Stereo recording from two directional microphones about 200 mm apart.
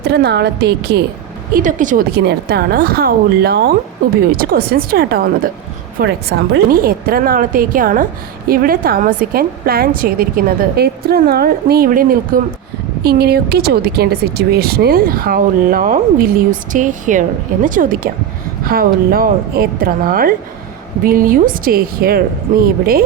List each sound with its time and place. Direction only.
0.0 s a woman's voice: 55° right (ahead or behind)
1.5 s speech: 40° right (ahead or behind)